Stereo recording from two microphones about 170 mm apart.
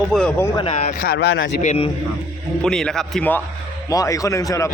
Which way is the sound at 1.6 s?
40° left (ahead or behind).